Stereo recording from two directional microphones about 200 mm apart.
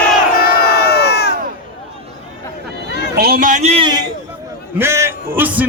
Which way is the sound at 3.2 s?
45° right (ahead or behind).